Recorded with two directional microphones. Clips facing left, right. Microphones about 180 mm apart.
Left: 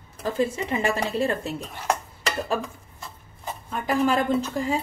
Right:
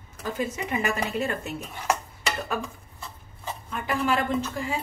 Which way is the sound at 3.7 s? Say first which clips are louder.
Left 4 dB; 40° left (ahead or behind).